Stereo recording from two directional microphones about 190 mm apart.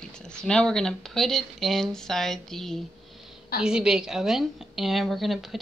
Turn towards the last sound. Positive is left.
turn(degrees=0)  # may be behind; listen again after turning